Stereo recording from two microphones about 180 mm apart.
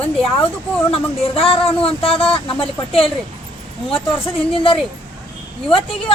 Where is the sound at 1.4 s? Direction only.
30° left (ahead or behind).